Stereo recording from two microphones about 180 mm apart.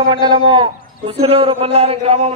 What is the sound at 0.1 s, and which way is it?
A man's voice, 25° right (ahead or behind).